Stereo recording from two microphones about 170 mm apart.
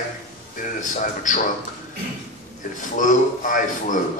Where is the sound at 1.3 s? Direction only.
50° left (ahead or behind).